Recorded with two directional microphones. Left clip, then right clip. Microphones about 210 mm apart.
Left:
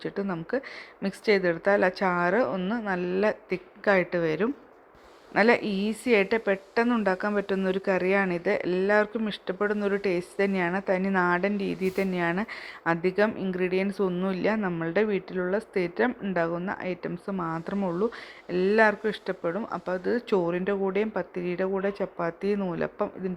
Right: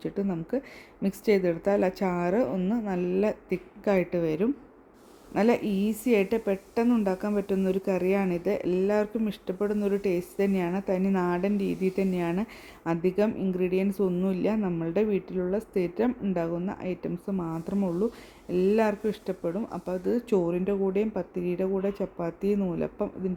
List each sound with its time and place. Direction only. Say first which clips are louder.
0.0 s speech: even; 5° right (ahead or behind)
17.2 s speech: left 3 dB; 20° left (ahead or behind)
18.4 s speech: left 3 dB; centre (ahead or behind)
19.5 s speech: left 2 dB; 15° left (ahead or behind)
19.8 s speech: even; centre (ahead or behind)